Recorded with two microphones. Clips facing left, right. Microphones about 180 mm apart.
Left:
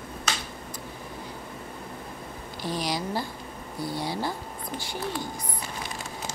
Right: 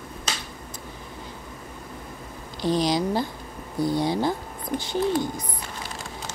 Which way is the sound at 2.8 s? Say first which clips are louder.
Right 6 dB; 20° right (ahead or behind).